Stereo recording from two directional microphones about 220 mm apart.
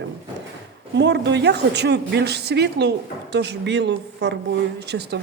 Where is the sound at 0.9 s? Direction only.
50° right (ahead or behind).